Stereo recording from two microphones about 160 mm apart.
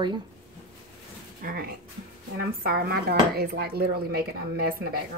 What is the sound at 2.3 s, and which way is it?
Speech, 70° right (ahead or behind).